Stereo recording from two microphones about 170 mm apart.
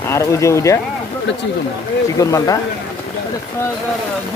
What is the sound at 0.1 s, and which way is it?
Speech, 20° left (ahead or behind).